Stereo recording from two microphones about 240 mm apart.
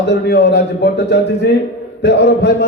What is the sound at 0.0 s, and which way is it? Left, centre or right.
A man's voice, left.